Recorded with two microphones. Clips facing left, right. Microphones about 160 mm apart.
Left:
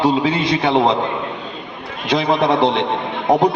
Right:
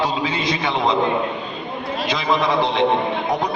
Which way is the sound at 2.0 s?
65° left (ahead or behind).